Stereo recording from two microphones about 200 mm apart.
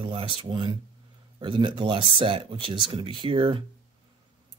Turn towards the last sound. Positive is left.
turn(degrees=-25)  # may be behind; listen again after turning